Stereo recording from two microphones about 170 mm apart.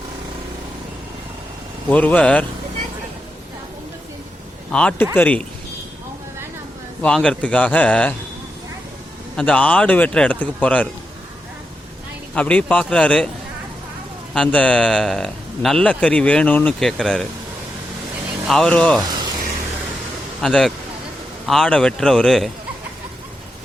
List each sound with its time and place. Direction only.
1.9 s speech: 10° left (ahead or behind)
4.7 s speech: 5° left (ahead or behind)
7.0 s speech: 5° left (ahead or behind)
9.3 s speech: 5° left (ahead or behind)
12.3 s speech: 5° left (ahead or behind)
14.3 s speech: 5° left (ahead or behind)
18.4 s speech: 5° left (ahead or behind)
19.0 s a sound: 25° right (ahead or behind)
20.4 s speech: 5° left (ahead or behind)